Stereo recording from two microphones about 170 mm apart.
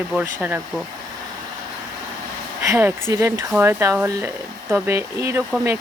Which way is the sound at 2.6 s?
10° right (ahead or behind).